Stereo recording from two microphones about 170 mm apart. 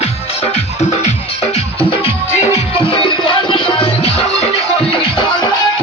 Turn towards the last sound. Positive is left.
turn(degrees=40)  # may be behind; listen again after turning